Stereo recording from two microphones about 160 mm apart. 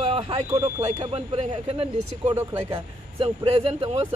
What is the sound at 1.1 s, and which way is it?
Speech, 40° right (ahead or behind).